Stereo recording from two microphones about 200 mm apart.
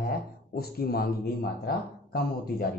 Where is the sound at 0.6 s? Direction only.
50° left (ahead or behind).